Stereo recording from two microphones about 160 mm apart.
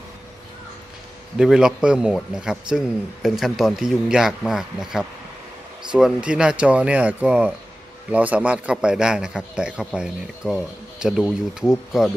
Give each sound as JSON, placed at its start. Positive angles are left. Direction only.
{"t": 1.4, "sound": "a man's voice", "side_deg": -5}